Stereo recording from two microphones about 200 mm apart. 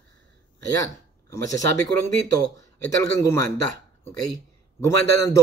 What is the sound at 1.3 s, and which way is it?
Speech, 15° left (ahead or behind).